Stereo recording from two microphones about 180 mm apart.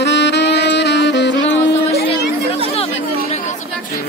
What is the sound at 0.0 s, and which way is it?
Music, 75° left (ahead or behind).